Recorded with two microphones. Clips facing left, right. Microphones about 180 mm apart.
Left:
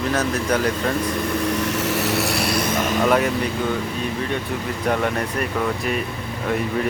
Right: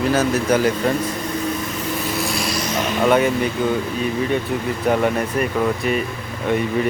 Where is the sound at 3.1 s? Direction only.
Centre (ahead or behind).